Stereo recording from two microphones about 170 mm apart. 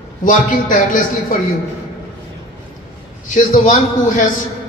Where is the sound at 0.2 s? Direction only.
50° left (ahead or behind).